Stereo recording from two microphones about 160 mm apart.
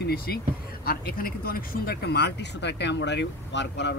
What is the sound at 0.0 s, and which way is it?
Speech, 75° left (ahead or behind).